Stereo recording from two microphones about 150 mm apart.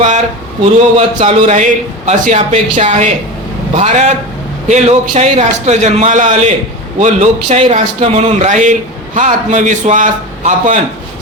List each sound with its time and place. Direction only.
0.6 s a man's voice: 45° right (ahead or behind)